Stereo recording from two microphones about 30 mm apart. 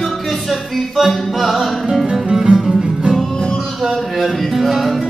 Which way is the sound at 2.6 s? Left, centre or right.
Right.